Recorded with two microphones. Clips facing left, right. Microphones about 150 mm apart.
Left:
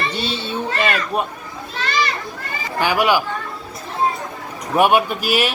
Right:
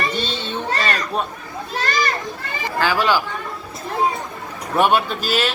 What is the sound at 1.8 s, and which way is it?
Children playing, 45° right (ahead or behind).